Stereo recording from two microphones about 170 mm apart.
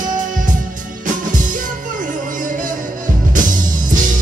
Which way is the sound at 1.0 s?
50° right (ahead or behind).